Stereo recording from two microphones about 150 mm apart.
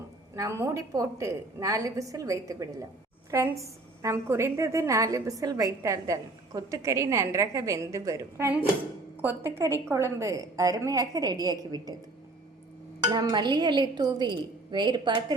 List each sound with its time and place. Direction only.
0.3 s a woman's voice: 20° right (ahead or behind)
13.1 s a woman's voice: 30° right (ahead or behind)